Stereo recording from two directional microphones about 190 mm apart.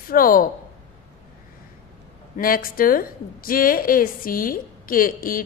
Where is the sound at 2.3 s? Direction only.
50° left (ahead or behind).